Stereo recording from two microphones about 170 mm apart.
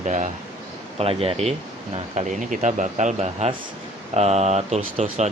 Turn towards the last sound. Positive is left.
turn(degrees=-40)  # may be behind; listen again after turning